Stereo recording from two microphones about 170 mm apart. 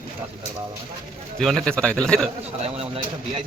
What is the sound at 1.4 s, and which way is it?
Speech, 5° left (ahead or behind).